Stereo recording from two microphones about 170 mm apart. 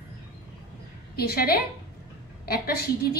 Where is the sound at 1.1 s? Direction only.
65° left (ahead or behind).